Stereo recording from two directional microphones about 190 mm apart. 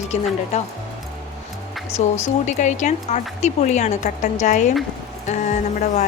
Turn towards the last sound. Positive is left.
turn(degrees=40)  # may be behind; listen again after turning